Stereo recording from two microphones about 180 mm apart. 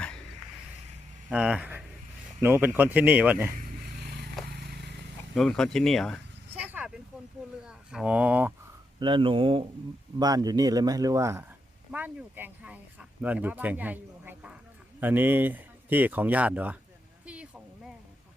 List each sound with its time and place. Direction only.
1.3 s speech: 5° right (ahead or behind)
3.6 s a sound: 50° right (ahead or behind)
4.4 s vehicle: 60° right (ahead or behind)
5.3 s speech: 5° left (ahead or behind)
6.5 s vehicle: 10° right (ahead or behind)
7.6 s speech: 5° right (ahead or behind)
9.0 s speech: 25° right (ahead or behind); by 16.7 s 10° right (ahead or behind)
17.2 s a sound: 5° right (ahead or behind)